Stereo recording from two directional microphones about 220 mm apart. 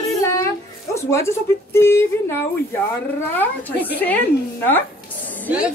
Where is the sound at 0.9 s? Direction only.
10° left (ahead or behind).